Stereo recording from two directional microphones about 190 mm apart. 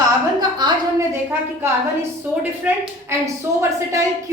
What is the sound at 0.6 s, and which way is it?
Speech, 20° right (ahead or behind).